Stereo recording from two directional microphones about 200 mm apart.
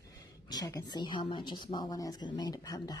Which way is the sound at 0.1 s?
20° left (ahead or behind).